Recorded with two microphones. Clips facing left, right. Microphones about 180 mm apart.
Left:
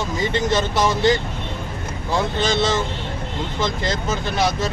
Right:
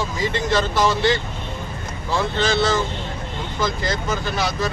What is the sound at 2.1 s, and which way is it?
Speech, 15° left (ahead or behind).